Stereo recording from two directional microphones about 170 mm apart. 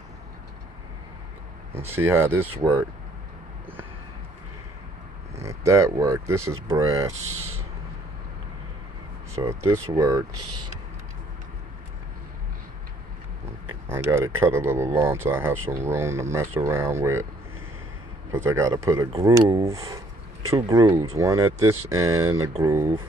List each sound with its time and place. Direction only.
1.7 s speech: 15° right (ahead or behind)
5.4 s speech: 15° right (ahead or behind)
9.3 s speech: 15° right (ahead or behind)
13.8 s speech: 15° right (ahead or behind)
18.3 s speech: 15° right (ahead or behind)